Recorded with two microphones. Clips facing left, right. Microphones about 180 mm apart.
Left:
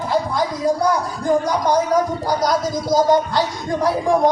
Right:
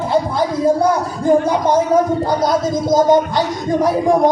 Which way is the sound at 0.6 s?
25° right (ahead or behind).